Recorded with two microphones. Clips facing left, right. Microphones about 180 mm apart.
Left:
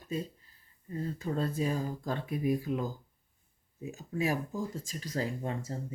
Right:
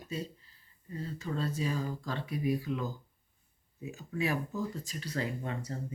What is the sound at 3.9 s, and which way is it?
Speech, 45° left (ahead or behind).